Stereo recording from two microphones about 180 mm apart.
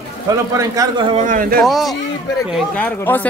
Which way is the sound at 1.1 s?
45° right (ahead or behind).